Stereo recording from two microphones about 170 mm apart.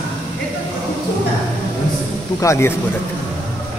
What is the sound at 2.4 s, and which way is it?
Speech, 15° left (ahead or behind).